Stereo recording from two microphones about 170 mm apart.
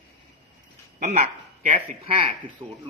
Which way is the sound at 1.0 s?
45° right (ahead or behind).